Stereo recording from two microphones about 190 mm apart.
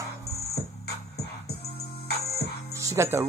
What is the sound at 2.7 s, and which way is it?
Speech, 15° right (ahead or behind).